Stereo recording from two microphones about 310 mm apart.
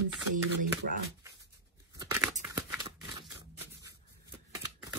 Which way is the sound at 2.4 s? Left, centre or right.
Centre.